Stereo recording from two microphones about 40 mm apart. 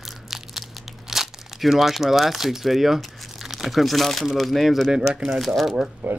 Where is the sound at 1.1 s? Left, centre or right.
Centre.